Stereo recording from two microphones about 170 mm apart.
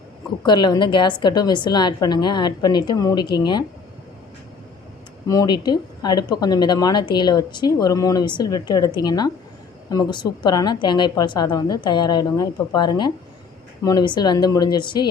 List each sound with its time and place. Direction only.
0.4 s speech: 25° left (ahead or behind)
5.3 s speech: 25° left (ahead or behind)